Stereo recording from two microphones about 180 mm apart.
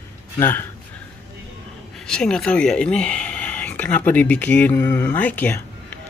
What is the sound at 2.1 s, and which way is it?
Speech, 5° left (ahead or behind).